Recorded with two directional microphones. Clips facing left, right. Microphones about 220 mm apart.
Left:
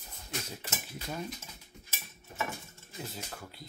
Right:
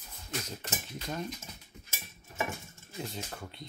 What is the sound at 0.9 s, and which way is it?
Speech, 5° left (ahead or behind).